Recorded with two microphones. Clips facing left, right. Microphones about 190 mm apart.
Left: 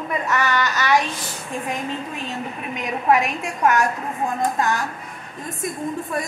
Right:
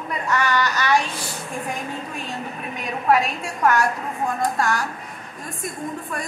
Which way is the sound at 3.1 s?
15° left (ahead or behind).